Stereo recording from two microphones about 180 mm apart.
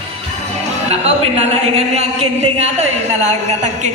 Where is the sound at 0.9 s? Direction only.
35° right (ahead or behind).